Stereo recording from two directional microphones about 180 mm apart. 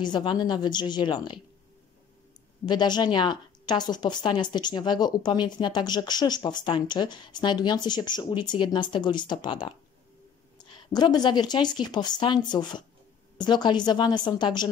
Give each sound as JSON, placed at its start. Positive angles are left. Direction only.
{"t": 0.0, "sound": "speech", "side_deg": 25}
{"t": 2.6, "sound": "speech", "side_deg": 25}